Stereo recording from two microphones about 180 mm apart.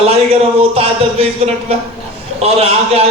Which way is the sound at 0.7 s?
35° right (ahead or behind).